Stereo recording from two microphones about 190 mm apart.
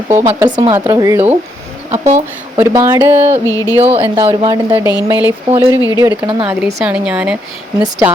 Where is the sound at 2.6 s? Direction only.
10° right (ahead or behind).